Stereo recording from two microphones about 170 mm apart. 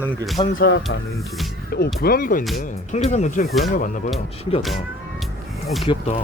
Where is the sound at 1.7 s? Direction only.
65° left (ahead or behind).